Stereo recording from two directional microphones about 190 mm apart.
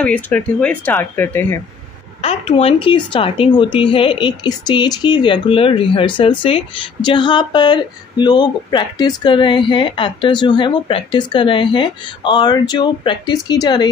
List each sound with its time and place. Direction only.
0.0 s speech: 5° left (ahead or behind)
2.2 s a woman's voice: 30° left (ahead or behind)